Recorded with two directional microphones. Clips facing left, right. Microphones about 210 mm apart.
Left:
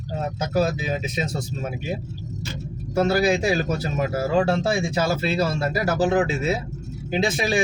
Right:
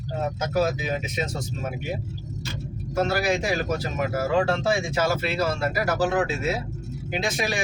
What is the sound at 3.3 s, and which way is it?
Speech, 30° left (ahead or behind).